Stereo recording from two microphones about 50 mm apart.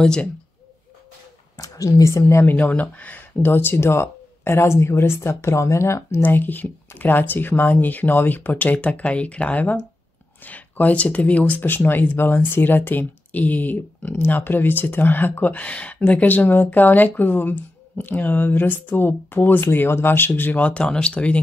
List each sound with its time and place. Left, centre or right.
0.0 s speech: centre
1.9 s speech: left
2.7 s speech: left
6.2 s speech: left
11.6 s speech: left